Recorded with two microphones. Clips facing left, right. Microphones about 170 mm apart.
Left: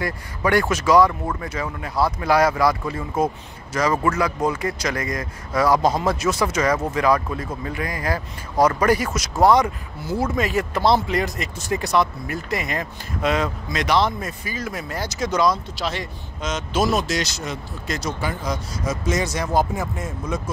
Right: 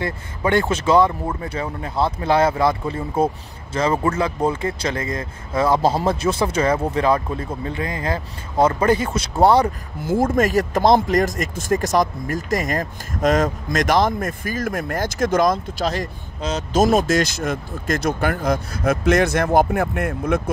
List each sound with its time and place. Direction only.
0.0 s speech: 25° right (ahead or behind)
10.0 s speech: 45° right (ahead or behind)